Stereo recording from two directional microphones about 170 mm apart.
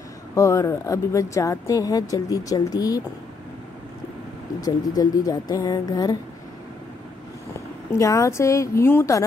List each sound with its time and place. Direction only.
0.3 s speech: 20° left (ahead or behind)
4.6 s speech: 20° left (ahead or behind)
7.9 s speech: 20° left (ahead or behind)